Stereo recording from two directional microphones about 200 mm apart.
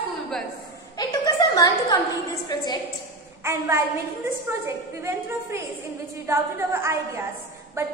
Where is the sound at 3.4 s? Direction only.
15° right (ahead or behind).